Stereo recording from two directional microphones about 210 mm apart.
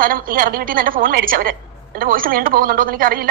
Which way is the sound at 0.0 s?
45° right (ahead or behind).